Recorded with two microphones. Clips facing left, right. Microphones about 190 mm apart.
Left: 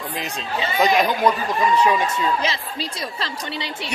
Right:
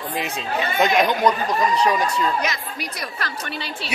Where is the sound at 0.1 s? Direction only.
5° right (ahead or behind).